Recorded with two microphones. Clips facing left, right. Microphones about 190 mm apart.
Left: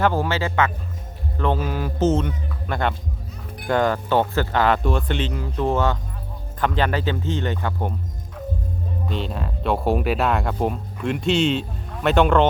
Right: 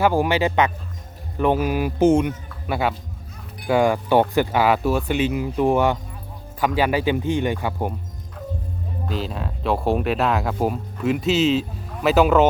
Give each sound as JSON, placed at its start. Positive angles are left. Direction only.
{"t": 0.0, "sound": "speech", "side_deg": -15}
{"t": 9.0, "sound": "speech", "side_deg": 0}